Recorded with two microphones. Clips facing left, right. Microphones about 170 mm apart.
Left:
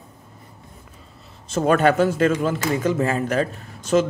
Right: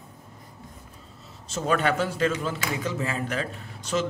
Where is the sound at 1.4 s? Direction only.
55° left (ahead or behind).